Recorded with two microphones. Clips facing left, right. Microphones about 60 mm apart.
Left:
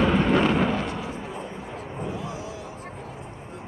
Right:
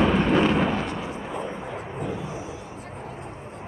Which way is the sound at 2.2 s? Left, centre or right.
Left.